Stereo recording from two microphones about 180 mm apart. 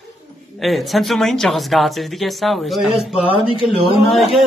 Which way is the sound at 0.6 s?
Centre (ahead or behind).